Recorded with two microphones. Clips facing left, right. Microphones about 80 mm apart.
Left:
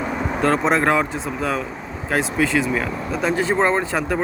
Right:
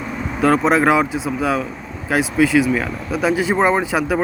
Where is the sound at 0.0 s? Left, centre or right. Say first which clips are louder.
Left 2 dB; left.